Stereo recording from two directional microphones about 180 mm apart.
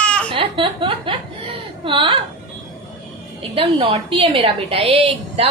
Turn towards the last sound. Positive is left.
turn(degrees=-30)  # may be behind; listen again after turning